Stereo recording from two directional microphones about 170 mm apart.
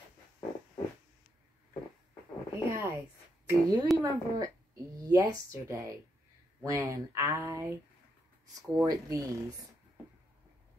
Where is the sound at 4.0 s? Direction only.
20° right (ahead or behind).